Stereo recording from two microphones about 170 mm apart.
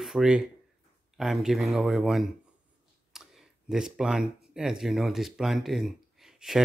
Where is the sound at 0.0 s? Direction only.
Centre (ahead or behind).